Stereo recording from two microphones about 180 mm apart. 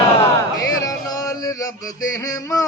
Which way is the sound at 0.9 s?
20° left (ahead or behind).